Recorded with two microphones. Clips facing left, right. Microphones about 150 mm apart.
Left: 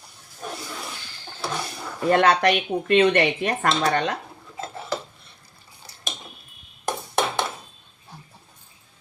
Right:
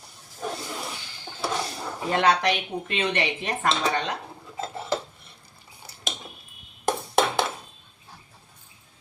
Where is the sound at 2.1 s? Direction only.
55° left (ahead or behind).